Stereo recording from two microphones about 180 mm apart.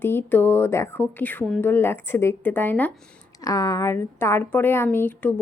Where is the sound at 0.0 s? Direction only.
10° left (ahead or behind).